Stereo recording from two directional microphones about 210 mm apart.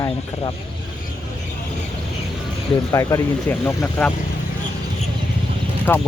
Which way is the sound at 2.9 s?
15° left (ahead or behind).